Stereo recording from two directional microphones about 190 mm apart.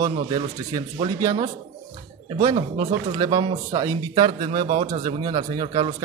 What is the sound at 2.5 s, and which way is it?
A man's voice, 25° right (ahead or behind).